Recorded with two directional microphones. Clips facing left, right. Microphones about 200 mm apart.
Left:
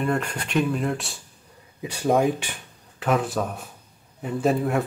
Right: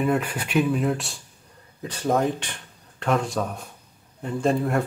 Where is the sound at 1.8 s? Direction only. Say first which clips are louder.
Left 2 dB; 10° left (ahead or behind).